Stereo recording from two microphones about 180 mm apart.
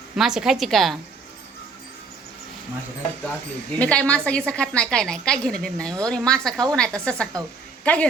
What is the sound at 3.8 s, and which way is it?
A woman's voice, 5° left (ahead or behind).